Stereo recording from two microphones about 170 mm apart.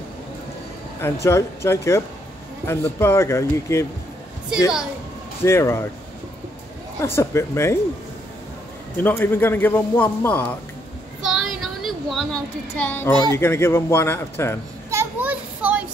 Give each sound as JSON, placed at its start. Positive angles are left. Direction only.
{"t": 1.0, "sound": "a man's voice", "side_deg": 15}
{"t": 5.4, "sound": "a man's voice", "side_deg": 15}
{"t": 7.0, "sound": "a man's voice", "side_deg": 15}
{"t": 8.9, "sound": "a man's voice", "side_deg": 10}
{"t": 11.2, "sound": "a woman's voice", "side_deg": 0}
{"t": 14.9, "sound": "children playing", "side_deg": -15}